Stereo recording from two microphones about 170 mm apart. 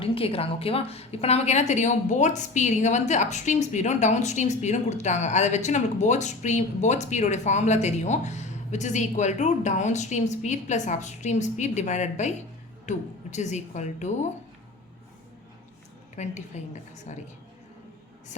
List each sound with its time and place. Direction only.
0.0 s a woman's voice: 35° left (ahead or behind)
16.1 s a woman's voice: 45° left (ahead or behind)